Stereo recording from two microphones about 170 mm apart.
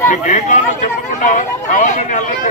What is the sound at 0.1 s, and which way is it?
Speech, 45° left (ahead or behind).